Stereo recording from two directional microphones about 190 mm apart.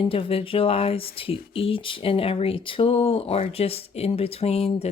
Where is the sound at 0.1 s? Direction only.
30° left (ahead or behind).